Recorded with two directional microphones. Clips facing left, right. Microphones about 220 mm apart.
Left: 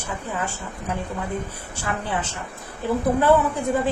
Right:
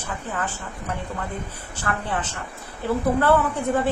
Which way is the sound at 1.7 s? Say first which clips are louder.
Even; 10° left (ahead or behind).